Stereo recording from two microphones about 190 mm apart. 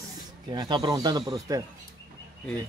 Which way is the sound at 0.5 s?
25° right (ahead or behind).